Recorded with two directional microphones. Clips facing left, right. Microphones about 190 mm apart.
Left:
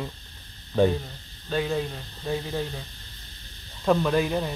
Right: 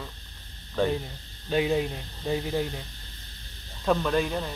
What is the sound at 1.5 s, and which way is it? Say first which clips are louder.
Speech: right 2 dB; 10° right (ahead or behind).